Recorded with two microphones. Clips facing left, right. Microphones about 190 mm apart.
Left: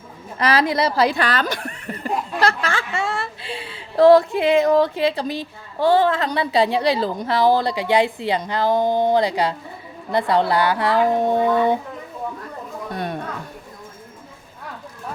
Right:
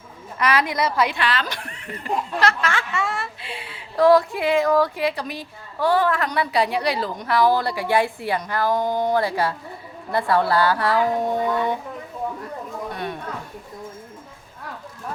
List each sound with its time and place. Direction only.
0.3 s speech: 30° left (ahead or behind)
2.4 s a woman's voice: 30° left (ahead or behind)